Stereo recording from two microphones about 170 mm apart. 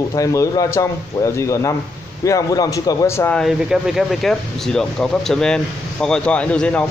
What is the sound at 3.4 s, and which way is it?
Speech, centre (ahead or behind).